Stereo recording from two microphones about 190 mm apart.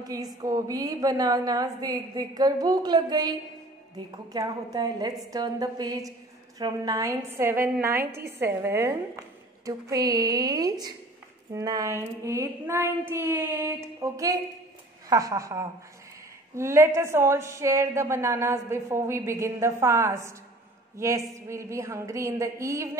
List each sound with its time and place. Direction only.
0.0 s a woman's voice: 20° right (ahead or behind)